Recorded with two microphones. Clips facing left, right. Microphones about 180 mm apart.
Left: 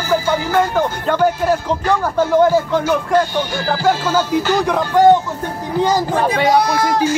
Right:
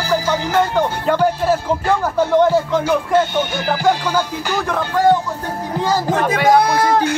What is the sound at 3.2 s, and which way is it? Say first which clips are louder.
Music: even; 20° right (ahead or behind).